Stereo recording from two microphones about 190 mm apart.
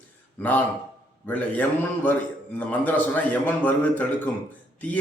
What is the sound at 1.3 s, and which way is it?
A man's voice, 10° left (ahead or behind).